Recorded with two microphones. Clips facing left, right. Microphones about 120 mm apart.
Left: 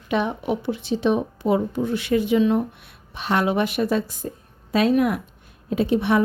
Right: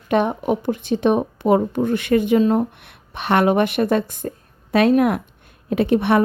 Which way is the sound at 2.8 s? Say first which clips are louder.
Right 4 dB; 60° right (ahead or behind).